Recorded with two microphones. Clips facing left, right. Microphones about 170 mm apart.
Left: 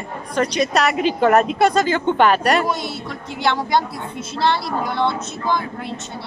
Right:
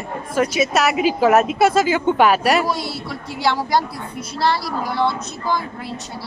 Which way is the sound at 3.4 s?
5° right (ahead or behind).